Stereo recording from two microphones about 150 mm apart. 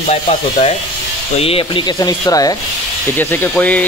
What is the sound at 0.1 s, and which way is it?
Speech, 45° left (ahead or behind).